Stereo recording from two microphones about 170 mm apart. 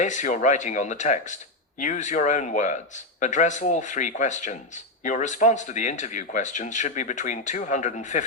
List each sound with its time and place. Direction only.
0.0 s speech: 45° left (ahead or behind)